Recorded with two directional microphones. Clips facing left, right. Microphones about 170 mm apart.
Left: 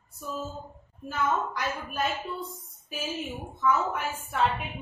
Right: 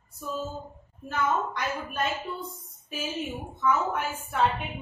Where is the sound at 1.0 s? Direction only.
Centre (ahead or behind).